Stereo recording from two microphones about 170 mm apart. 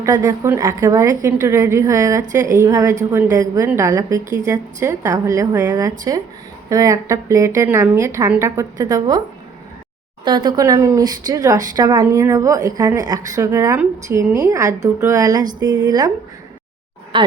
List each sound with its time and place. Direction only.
0.0 s a woman's voice: 20° right (ahead or behind)
10.2 s speech: 25° right (ahead or behind)
17.1 s speech: 30° right (ahead or behind)